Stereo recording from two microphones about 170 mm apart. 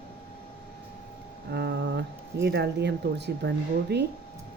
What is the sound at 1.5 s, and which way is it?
Speech, 75° right (ahead or behind).